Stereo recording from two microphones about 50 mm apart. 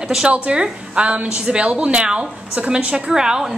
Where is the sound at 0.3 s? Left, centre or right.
Right.